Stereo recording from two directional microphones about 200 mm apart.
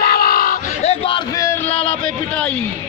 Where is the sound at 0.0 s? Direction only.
50° left (ahead or behind).